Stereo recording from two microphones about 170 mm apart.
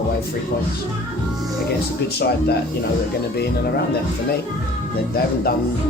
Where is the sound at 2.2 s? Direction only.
70° left (ahead or behind).